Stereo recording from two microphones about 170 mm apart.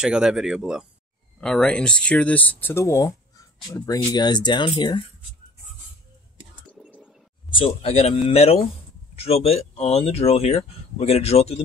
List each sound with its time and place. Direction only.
0.0 s speech: 5° right (ahead or behind); by 5.0 s 25° left (ahead or behind)
7.5 s speech: 35° left (ahead or behind)